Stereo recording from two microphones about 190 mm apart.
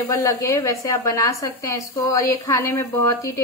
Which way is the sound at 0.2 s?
15° left (ahead or behind).